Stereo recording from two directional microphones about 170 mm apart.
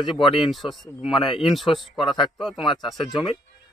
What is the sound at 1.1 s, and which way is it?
Speech, 30° left (ahead or behind).